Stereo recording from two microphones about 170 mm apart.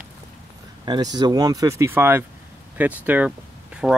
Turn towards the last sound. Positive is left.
turn(degrees=0)  # may be behind; listen again after turning